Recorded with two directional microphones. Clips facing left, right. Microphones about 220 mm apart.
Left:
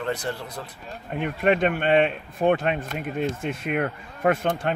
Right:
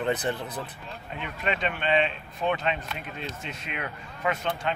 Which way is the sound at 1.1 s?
55° left (ahead or behind).